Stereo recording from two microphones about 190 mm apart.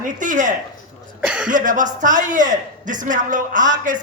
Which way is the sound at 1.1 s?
5° right (ahead or behind).